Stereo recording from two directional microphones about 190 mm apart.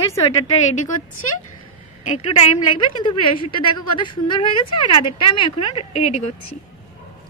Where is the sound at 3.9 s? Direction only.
25° left (ahead or behind).